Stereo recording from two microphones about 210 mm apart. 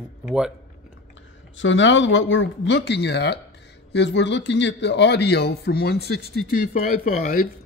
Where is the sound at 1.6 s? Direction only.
60° left (ahead or behind).